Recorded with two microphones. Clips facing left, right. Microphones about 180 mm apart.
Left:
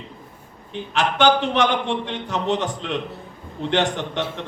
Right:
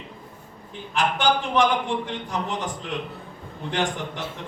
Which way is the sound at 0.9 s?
80° left.